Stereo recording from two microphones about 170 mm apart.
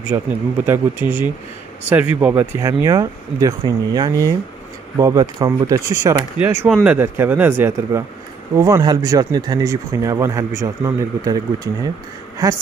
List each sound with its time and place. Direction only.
0.1 s speech: 15° right (ahead or behind)